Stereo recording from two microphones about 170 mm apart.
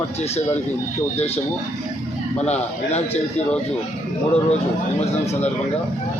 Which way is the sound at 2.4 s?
40° left (ahead or behind).